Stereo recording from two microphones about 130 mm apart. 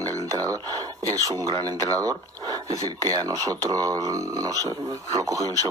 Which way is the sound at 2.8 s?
30° right (ahead or behind).